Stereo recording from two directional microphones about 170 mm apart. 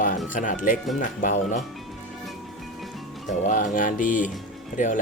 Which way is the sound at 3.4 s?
45° left (ahead or behind).